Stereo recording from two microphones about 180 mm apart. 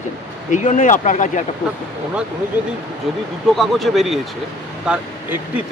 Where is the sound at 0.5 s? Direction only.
40° left (ahead or behind).